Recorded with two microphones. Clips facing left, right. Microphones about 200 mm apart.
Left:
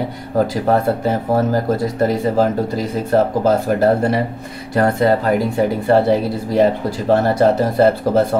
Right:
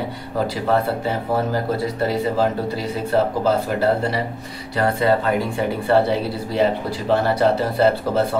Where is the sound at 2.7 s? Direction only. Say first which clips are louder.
Left 5 dB; 45° left (ahead or behind).